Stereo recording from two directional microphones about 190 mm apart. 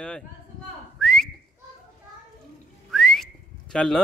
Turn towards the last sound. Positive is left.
turn(degrees=5)  # may be behind; listen again after turning